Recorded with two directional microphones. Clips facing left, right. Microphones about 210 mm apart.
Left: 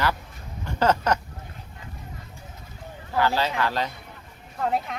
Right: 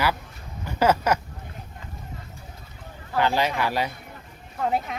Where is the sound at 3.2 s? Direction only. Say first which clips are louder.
Right 1 dB; 15° right (ahead or behind).